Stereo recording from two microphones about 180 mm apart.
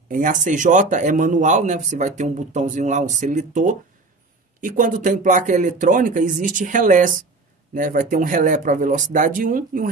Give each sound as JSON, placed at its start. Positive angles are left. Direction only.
{"t": 0.1, "sound": "speech", "side_deg": -45}